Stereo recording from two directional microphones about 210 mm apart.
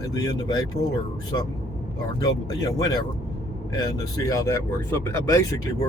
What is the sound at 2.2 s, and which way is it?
Speech, 20° left (ahead or behind).